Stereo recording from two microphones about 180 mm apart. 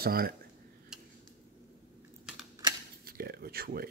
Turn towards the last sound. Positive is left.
turn(degrees=-55)  # may be behind; listen again after turning